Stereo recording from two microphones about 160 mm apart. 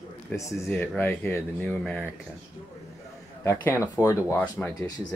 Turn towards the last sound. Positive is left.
turn(degrees=20)  # may be behind; listen again after turning